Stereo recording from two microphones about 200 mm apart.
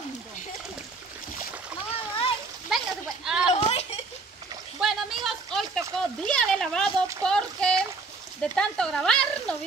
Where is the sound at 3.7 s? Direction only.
30° left (ahead or behind).